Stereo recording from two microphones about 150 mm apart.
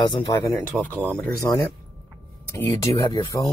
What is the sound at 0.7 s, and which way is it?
Speech, 5° right (ahead or behind).